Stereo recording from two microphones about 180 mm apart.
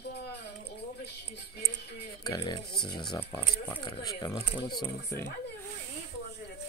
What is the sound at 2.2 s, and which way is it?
Speech, 25° left (ahead or behind).